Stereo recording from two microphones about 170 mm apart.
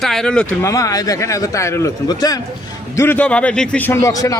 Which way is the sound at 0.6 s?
20° left (ahead or behind).